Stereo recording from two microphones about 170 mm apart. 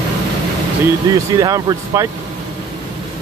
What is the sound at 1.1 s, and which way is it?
Speech, 20° right (ahead or behind).